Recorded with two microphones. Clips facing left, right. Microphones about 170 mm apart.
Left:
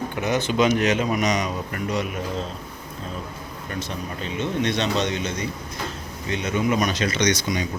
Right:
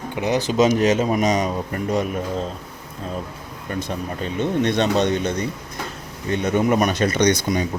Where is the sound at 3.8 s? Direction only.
55° right (ahead or behind).